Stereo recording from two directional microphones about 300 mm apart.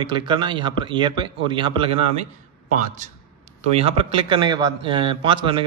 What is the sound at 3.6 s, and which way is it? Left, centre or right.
Speech, centre.